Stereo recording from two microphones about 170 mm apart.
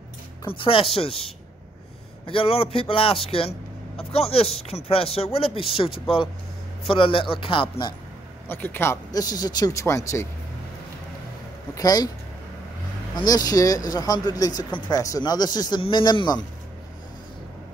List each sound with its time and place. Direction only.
0.5 s a man's voice: 30° left (ahead or behind)
8.5 s speech: 10° left (ahead or behind)
11.7 s speech: 20° left (ahead or behind)
13.1 s speech: 25° left (ahead or behind)